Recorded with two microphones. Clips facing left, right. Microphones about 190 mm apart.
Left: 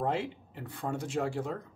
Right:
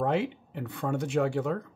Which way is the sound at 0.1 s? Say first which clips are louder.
Right 5 dB; 65° right (ahead or behind).